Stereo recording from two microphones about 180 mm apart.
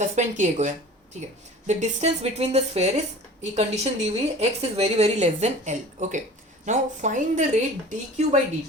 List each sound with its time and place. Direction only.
0.0 s a woman's voice: 40° right (ahead or behind)